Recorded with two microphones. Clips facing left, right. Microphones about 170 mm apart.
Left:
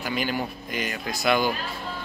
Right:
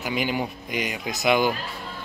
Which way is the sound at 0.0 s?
15° right (ahead or behind).